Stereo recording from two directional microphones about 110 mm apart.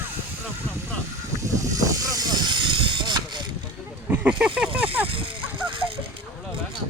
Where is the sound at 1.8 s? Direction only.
35° right (ahead or behind).